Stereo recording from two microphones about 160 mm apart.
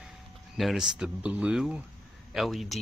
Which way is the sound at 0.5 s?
Centre (ahead or behind).